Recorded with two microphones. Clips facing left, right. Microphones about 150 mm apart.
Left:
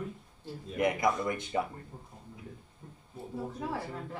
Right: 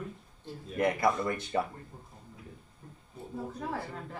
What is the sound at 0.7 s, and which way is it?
Speech, 15° left (ahead or behind).